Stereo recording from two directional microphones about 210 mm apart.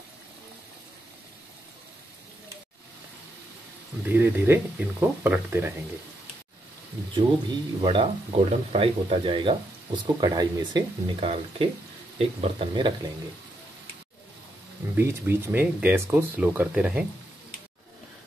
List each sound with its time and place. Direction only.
4.1 s speech: 10° right (ahead or behind)
7.2 s speech: 25° right (ahead or behind)
15.0 s speech: 10° right (ahead or behind)